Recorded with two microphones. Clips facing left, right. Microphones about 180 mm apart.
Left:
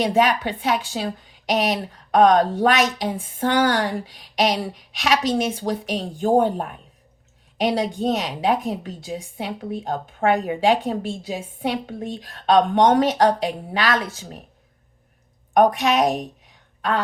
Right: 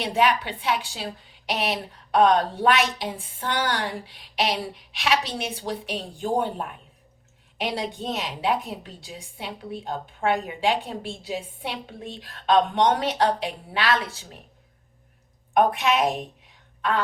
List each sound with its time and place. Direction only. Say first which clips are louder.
0.0 s a woman's voice: left 4 dB; 45° left (ahead or behind)
15.5 s a woman's voice: left 4 dB; 40° left (ahead or behind)